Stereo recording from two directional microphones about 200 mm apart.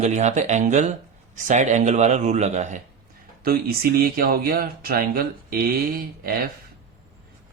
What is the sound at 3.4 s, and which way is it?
Speech, 50° right (ahead or behind).